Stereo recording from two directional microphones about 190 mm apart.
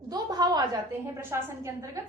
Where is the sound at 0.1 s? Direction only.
20° right (ahead or behind).